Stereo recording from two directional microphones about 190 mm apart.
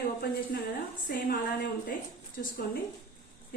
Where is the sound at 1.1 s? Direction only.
50° left (ahead or behind).